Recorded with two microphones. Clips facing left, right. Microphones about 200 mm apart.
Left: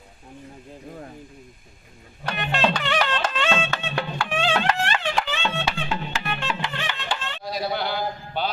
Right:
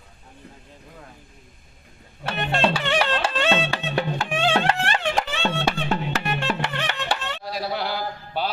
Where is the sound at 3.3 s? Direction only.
35° right (ahead or behind).